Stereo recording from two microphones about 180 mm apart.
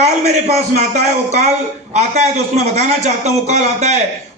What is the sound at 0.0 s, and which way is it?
Speech, 35° right (ahead or behind).